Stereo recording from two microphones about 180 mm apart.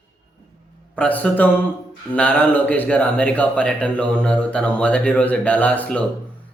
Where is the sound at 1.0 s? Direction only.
10° left (ahead or behind).